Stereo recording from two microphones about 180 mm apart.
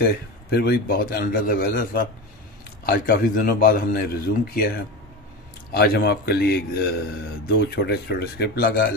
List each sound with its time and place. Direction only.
0.0 s speech: 60° left (ahead or behind)